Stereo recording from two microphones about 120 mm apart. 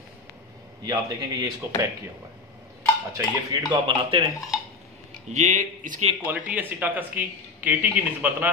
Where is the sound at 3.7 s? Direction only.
45° right (ahead or behind).